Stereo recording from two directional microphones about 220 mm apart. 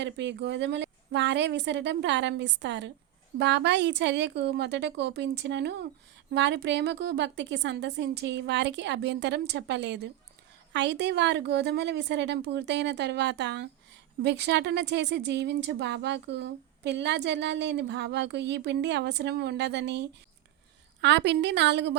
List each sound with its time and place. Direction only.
0.0 s a woman's voice: 50° right (ahead or behind)